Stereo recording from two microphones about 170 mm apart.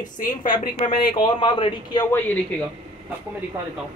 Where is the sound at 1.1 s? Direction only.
30° left (ahead or behind).